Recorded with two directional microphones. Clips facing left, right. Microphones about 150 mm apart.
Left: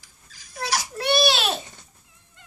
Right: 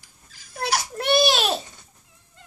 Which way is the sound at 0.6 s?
55° right (ahead or behind).